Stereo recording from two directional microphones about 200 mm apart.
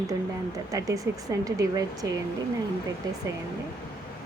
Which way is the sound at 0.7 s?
15° right (ahead or behind).